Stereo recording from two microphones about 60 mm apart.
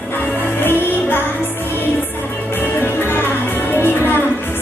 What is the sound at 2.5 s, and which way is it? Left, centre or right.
Music, left.